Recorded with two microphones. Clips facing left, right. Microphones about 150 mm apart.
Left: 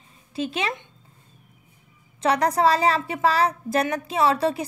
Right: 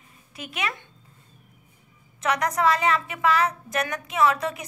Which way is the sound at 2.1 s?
30° left (ahead or behind).